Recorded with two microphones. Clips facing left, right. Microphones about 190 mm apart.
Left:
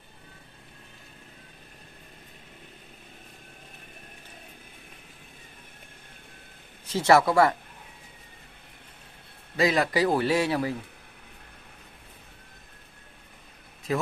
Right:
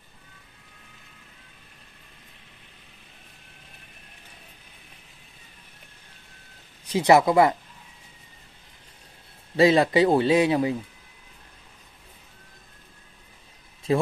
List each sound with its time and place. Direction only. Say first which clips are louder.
6.9 s speech: right 2 dB; 15° right (ahead or behind)
9.6 s speech: right 6 dB; 30° right (ahead or behind)
13.9 s speech: right 5 dB; 30° right (ahead or behind)